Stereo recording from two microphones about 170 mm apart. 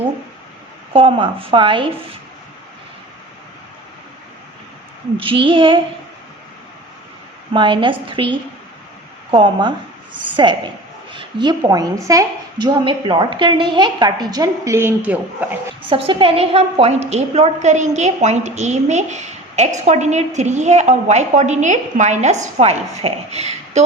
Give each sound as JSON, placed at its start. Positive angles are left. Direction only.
{"t": 0.9, "sound": "a woman's voice", "side_deg": -30}
{"t": 5.1, "sound": "speech", "side_deg": -30}
{"t": 7.5, "sound": "a woman's voice", "side_deg": -30}
{"t": 15.9, "sound": "a woman's voice", "side_deg": -30}